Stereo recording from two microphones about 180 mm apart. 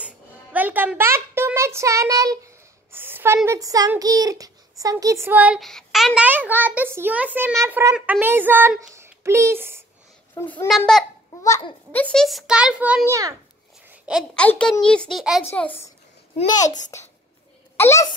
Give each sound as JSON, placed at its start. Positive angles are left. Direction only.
{"t": 0.0, "sound": "music", "side_deg": -10}
{"t": 3.4, "sound": "speech", "side_deg": -20}
{"t": 10.3, "sound": "a child's voice", "side_deg": 10}
{"t": 11.4, "sound": "a child's voice", "side_deg": 20}
{"t": 12.0, "sound": "a child's voice", "side_deg": 5}
{"t": 14.3, "sound": "a child's voice", "side_deg": 5}